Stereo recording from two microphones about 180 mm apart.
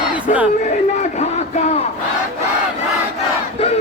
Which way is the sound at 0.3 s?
40° left (ahead or behind).